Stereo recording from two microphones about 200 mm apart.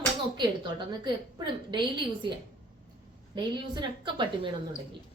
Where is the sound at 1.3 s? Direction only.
20° right (ahead or behind).